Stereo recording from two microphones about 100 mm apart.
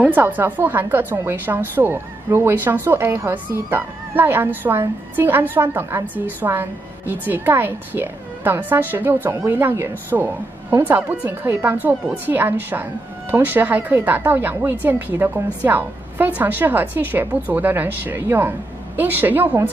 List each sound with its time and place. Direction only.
0.0 s a woman's voice: 15° right (ahead or behind)